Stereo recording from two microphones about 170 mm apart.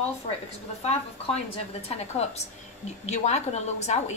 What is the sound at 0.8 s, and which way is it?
A woman's voice, 40° left (ahead or behind).